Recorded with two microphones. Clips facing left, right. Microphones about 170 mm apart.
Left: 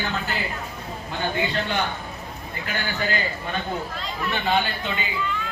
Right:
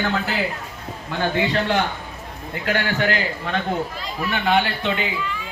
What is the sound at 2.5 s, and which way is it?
A man's voice, 80° right.